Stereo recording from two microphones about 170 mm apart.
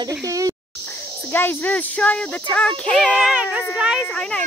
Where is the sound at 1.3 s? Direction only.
10° left (ahead or behind).